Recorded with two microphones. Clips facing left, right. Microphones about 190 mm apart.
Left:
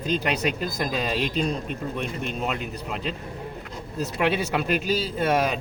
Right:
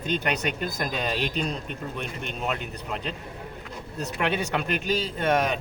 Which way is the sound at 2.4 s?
Centre (ahead or behind).